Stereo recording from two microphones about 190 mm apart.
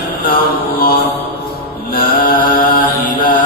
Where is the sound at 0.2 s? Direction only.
50° left (ahead or behind).